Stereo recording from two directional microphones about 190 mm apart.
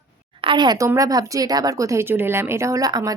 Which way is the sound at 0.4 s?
25° right (ahead or behind).